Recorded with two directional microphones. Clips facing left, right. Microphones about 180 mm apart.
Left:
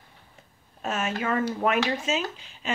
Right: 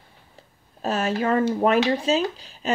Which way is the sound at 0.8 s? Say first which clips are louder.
Right 5 dB; 35° right (ahead or behind).